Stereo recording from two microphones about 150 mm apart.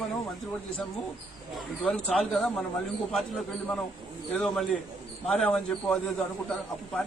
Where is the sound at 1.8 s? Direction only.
5° left (ahead or behind).